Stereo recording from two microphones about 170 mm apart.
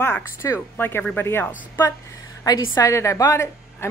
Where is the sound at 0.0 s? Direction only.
15° left (ahead or behind).